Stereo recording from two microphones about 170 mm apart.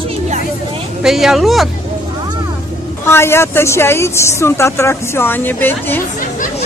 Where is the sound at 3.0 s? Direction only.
15° left (ahead or behind).